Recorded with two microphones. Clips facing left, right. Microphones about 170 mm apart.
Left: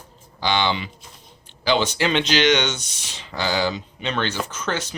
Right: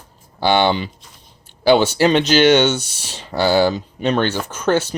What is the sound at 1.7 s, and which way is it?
Speech, 45° right (ahead or behind).